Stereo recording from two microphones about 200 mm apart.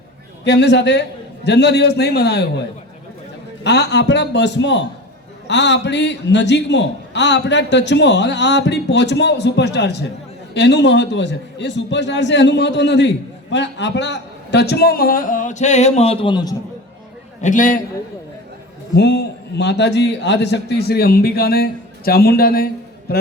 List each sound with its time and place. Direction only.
0.4 s a man's voice: 60° left (ahead or behind)
3.6 s a man's voice: 60° left (ahead or behind); by 16.6 s 20° left (ahead or behind)
17.4 s a man's voice: 40° left (ahead or behind)
18.9 s a man's voice: 60° left (ahead or behind)